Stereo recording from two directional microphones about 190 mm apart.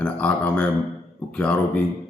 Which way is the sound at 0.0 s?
5° left (ahead or behind).